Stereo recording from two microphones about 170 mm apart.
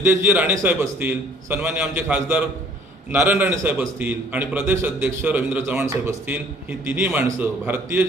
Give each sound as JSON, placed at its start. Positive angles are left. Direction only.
{"t": 0.0, "sound": "a man's voice", "side_deg": -10}